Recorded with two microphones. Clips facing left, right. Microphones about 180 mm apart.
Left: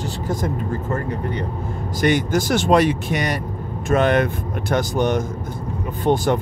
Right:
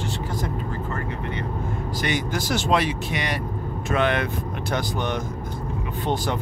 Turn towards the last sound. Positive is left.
turn(degrees=50)  # may be behind; listen again after turning